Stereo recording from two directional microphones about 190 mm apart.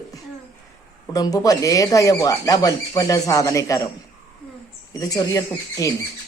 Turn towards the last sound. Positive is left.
turn(degrees=15)  # may be behind; listen again after turning